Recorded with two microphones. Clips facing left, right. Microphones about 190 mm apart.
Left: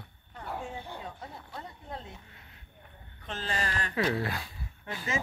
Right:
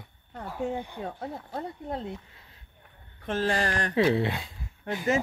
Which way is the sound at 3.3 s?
70° right (ahead or behind).